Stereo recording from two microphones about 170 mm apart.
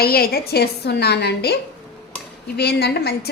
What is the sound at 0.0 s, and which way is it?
A woman's voice, 65° left (ahead or behind).